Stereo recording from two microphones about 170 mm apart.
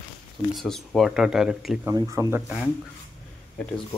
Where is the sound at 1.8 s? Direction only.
20° right (ahead or behind).